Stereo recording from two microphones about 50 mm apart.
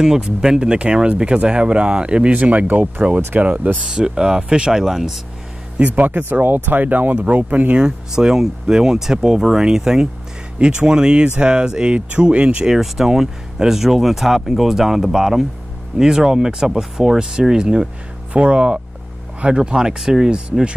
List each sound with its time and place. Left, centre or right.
0.0 s speech: centre; by 3.8 s right
3.8 s speech: centre
5.9 s speech: right
7.8 s speech: centre
12.6 s speech: centre